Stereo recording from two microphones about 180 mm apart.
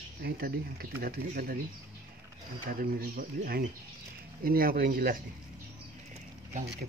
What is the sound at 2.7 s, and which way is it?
Speech, 55° right (ahead or behind).